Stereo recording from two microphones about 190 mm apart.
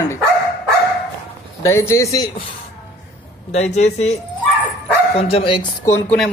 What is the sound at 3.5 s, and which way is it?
Speech, 35° left (ahead or behind).